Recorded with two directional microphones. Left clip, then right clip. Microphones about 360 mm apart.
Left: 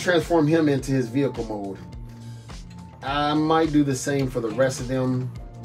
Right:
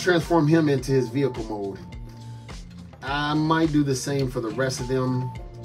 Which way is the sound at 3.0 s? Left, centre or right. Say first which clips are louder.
Left 2 dB; centre.